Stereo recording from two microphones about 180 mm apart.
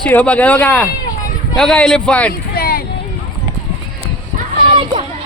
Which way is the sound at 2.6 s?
55° left (ahead or behind).